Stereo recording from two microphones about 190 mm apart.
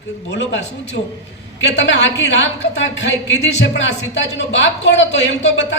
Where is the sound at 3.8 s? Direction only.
70° left (ahead or behind).